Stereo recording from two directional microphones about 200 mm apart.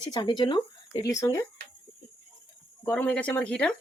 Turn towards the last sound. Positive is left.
turn(degrees=5)  # may be behind; listen again after turning